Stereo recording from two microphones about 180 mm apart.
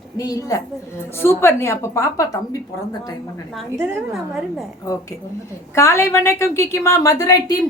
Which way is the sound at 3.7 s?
10° right (ahead or behind).